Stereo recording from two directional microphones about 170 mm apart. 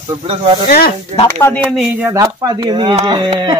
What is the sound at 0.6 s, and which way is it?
Speech, 60° left (ahead or behind).